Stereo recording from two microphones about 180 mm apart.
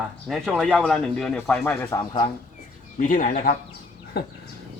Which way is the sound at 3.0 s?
50° left (ahead or behind).